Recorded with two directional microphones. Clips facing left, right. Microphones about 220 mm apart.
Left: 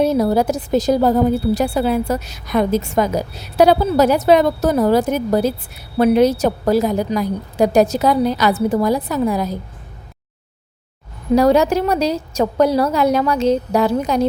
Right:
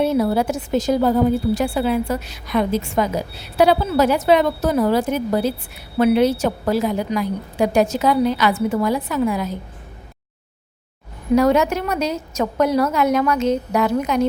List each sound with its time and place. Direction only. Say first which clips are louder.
0.0 s a woman's voice: left 3 dB; 40° left (ahead or behind)
11.3 s a woman's voice: left 3 dB; 35° left (ahead or behind)